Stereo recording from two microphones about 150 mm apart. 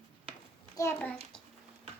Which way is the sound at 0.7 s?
15° left (ahead or behind).